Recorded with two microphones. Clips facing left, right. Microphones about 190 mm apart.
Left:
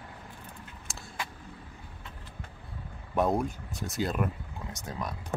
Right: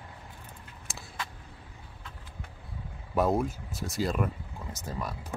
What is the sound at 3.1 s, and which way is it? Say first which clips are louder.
Speech: right 1 dB; centre (ahead or behind).